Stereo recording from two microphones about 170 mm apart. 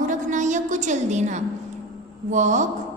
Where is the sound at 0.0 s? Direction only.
50° right (ahead or behind).